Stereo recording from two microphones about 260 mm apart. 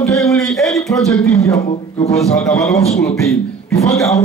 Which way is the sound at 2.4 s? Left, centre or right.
Centre.